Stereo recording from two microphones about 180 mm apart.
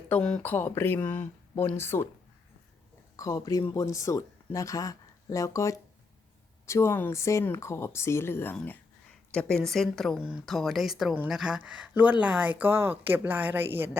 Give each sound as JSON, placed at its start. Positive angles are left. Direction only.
{"t": 0.1, "sound": "speech", "side_deg": 5}
{"t": 3.2, "sound": "a woman's voice", "side_deg": 20}